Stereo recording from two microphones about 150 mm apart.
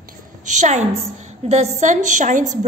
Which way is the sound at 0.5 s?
55° right (ahead or behind).